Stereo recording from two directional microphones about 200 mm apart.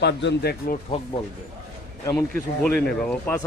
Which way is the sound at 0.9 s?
30° left (ahead or behind).